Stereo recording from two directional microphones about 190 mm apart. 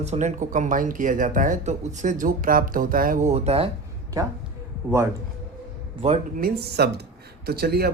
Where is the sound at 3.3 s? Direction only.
30° right (ahead or behind).